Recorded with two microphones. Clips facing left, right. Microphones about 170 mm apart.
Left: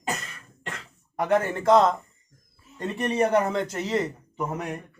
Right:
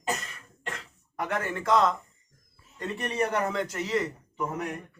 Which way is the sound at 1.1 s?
25° left (ahead or behind).